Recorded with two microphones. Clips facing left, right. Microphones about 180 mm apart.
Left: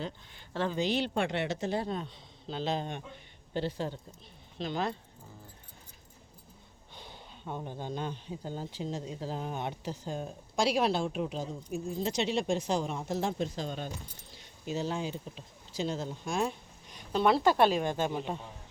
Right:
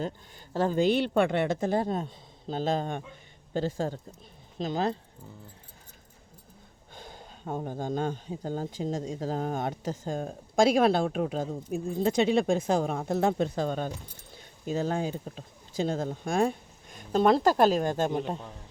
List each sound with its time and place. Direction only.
0.0 s speech: 40° right (ahead or behind)
6.9 s speech: 45° right (ahead or behind)